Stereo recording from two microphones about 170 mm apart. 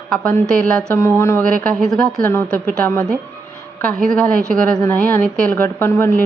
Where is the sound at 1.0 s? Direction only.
15° left (ahead or behind).